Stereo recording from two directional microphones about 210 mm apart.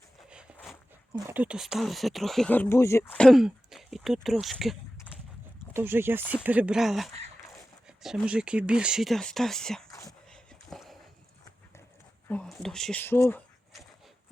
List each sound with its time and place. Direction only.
0.3 s a sound: 5° right (ahead or behind)
1.1 s speech: 10° right (ahead or behind)
5.7 s speech: 10° right (ahead or behind)
9.9 s whispering: 15° left (ahead or behind)
10.3 s a sound: centre (ahead or behind)
12.3 s speech: 5° left (ahead or behind)